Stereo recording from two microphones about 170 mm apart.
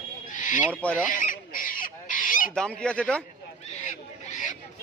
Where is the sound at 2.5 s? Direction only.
5° left (ahead or behind).